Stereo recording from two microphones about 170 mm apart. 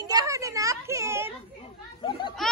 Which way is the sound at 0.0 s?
20° right (ahead or behind).